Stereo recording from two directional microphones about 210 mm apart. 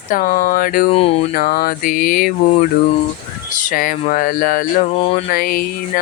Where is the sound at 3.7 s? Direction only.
40° left (ahead or behind).